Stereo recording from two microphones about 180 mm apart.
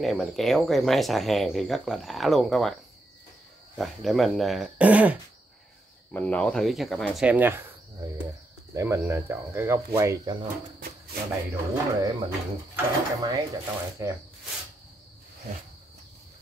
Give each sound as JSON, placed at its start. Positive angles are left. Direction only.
{"t": 0.0, "sound": "speech", "side_deg": 0}
{"t": 3.7, "sound": "speech", "side_deg": 0}
{"t": 6.1, "sound": "speech", "side_deg": 5}
{"t": 8.7, "sound": "speech", "side_deg": -15}